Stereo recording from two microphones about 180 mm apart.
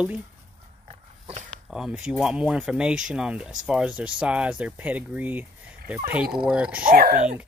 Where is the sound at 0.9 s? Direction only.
35° right (ahead or behind).